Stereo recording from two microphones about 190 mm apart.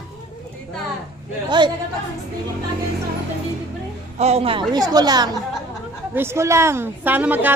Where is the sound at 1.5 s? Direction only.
25° right (ahead or behind).